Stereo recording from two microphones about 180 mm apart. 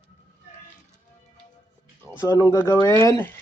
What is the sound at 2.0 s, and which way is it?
Speech, 20° left (ahead or behind).